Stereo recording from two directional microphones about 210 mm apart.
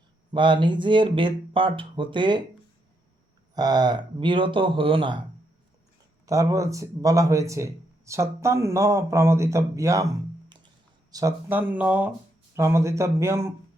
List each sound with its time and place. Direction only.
0.3 s speech: 20° right (ahead or behind)
3.5 s speech: 20° right (ahead or behind)
6.2 s speech: 15° right (ahead or behind)
11.1 s speech: 15° right (ahead or behind)